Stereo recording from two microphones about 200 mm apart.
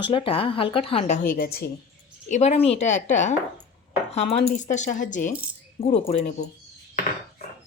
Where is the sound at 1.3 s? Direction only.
50° left (ahead or behind).